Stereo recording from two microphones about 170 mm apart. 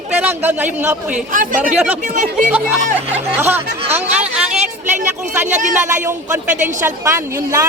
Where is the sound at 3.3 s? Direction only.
10° right (ahead or behind).